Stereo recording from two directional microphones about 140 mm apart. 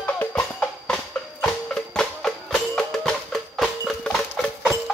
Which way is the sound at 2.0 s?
5° left (ahead or behind).